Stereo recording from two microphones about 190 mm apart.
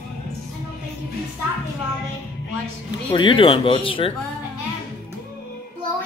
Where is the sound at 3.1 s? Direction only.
25° left (ahead or behind).